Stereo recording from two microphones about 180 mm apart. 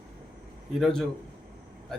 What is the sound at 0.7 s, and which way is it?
Speech, centre (ahead or behind).